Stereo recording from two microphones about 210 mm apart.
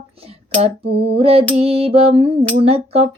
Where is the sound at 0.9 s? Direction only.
50° right (ahead or behind).